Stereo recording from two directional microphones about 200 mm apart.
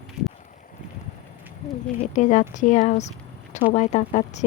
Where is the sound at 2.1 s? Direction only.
40° left (ahead or behind).